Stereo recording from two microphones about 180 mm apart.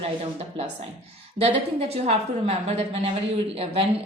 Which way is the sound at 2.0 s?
35° right (ahead or behind).